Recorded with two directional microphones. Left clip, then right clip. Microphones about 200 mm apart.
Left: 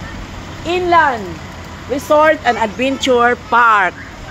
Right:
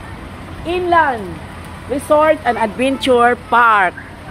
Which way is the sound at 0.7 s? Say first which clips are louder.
Left 2 dB; 5° right (ahead or behind).